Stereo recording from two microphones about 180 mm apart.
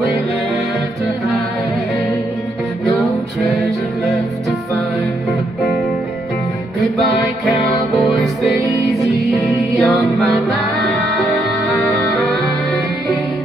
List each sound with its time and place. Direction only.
2.8 s music: centre (ahead or behind)
6.8 s music: centre (ahead or behind)
11.8 s music: centre (ahead or behind)